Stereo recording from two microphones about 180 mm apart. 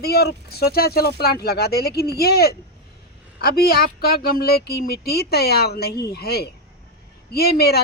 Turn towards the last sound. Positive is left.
turn(degrees=60)  # may be behind; listen again after turning